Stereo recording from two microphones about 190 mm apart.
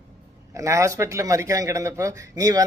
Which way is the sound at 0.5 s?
15° right (ahead or behind).